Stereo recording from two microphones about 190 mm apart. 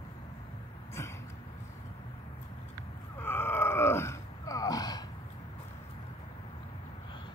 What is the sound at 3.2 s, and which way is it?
Groan, 10° left (ahead or behind).